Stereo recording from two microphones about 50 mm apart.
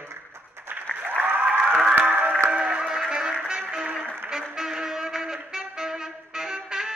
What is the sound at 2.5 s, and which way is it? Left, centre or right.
Music, centre.